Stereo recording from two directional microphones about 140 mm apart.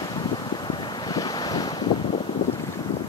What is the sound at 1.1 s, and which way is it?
Waves, 30° left (ahead or behind).